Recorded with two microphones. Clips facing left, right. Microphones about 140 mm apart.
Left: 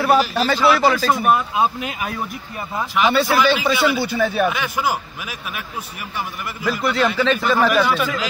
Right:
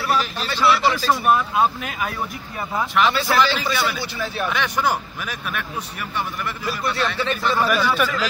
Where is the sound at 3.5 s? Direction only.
60° left (ahead or behind).